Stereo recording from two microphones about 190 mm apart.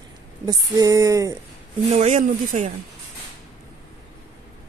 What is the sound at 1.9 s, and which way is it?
Speech, 35° right (ahead or behind).